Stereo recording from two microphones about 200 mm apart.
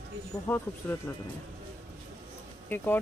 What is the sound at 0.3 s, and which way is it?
Speech, 15° left (ahead or behind).